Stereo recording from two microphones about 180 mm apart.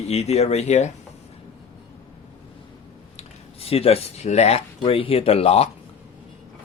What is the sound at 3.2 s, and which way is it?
Speech, 35° left (ahead or behind).